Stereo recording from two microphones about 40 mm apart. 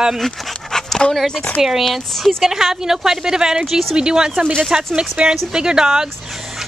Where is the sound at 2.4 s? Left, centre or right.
Centre.